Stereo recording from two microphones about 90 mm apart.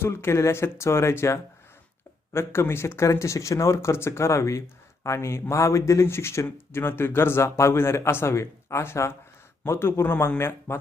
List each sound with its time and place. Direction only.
0.0 s speech: 30° left (ahead or behind)